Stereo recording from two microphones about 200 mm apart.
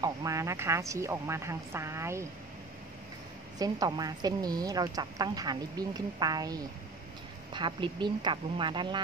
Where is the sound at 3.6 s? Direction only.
20° right (ahead or behind).